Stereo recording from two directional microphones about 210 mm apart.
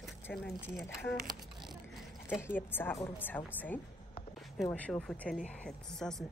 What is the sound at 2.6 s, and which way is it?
A woman's voice, 10° left (ahead or behind).